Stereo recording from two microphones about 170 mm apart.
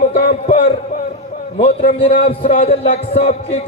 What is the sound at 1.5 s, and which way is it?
Speech, 70° left (ahead or behind).